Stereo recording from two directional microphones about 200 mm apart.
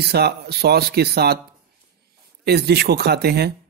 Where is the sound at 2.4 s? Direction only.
55° right (ahead or behind).